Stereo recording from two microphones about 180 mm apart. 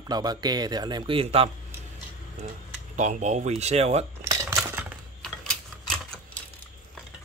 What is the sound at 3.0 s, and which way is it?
Mantra, 40° right (ahead or behind).